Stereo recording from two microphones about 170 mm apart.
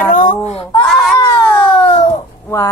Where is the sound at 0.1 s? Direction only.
50° left (ahead or behind).